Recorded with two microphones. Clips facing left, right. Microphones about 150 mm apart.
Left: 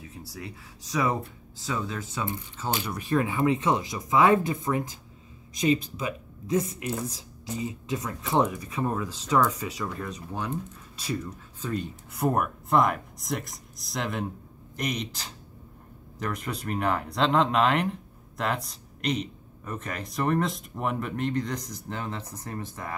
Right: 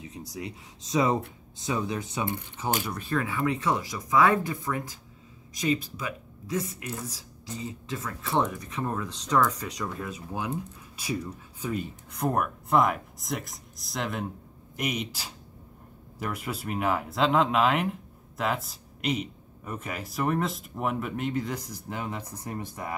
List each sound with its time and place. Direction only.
0.0 s speech: 20° right (ahead or behind)
2.9 s speech: 15° left (ahead or behind); by 11.9 s 10° right (ahead or behind)
12.1 s speech: 5° left (ahead or behind); by 22.9 s 15° right (ahead or behind)